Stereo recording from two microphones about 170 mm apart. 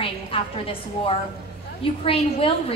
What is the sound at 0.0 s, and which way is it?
A woman's voice, 35° left (ahead or behind).